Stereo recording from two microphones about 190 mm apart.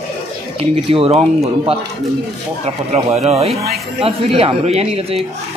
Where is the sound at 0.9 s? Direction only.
30° right (ahead or behind).